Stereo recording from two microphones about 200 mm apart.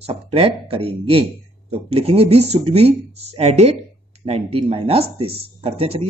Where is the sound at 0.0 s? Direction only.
30° right (ahead or behind).